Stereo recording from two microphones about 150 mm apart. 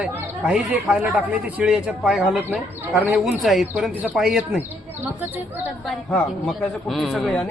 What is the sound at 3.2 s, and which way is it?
A man's voice, centre (ahead or behind).